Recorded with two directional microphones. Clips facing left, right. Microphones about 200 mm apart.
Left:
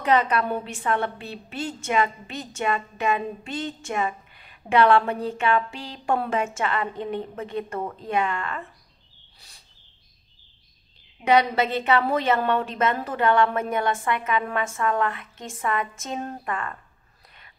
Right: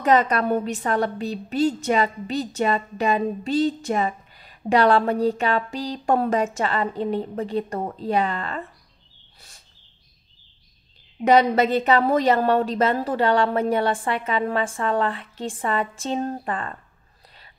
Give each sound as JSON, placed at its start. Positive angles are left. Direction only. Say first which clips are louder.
{"t": 0.0, "sound": "a woman's voice", "louder": "right 3 dB", "side_deg": -40}
{"t": 11.2, "sound": "a woman's voice", "louder": "right 3 dB", "side_deg": -40}